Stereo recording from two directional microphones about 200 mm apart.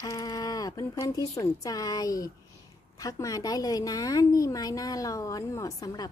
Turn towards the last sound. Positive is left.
turn(degrees=20)  # may be behind; listen again after turning